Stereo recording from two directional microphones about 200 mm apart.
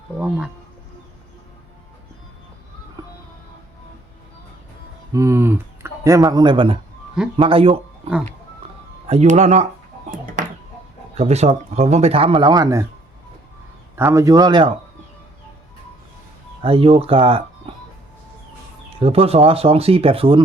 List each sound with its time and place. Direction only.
5.1 s speech: 15° right (ahead or behind)
9.0 s speech: 35° right (ahead or behind)
10.1 s a sound: 40° right (ahead or behind)
11.2 s speech: 35° right (ahead or behind)
13.9 s speech: 15° right (ahead or behind)
16.6 s speech: 30° right (ahead or behind)
18.9 s speech: 30° right (ahead or behind)